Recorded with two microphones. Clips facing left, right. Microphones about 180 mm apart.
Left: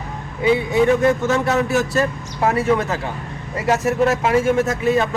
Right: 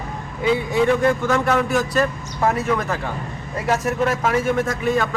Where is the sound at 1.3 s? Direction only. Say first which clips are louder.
Left 1 dB; 25° left (ahead or behind).